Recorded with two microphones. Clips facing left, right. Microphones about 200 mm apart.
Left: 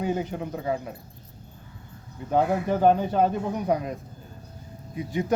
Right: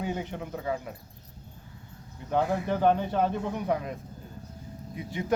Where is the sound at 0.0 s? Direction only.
40° left (ahead or behind).